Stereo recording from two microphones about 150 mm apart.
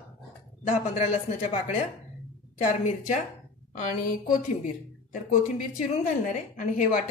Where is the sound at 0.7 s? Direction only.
50° left (ahead or behind).